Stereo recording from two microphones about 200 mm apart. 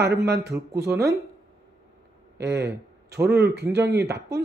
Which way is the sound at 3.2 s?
55° right (ahead or behind).